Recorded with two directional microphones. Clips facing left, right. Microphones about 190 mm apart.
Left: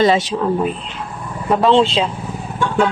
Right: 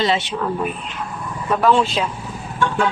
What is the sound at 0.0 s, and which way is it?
Speech, 40° left (ahead or behind).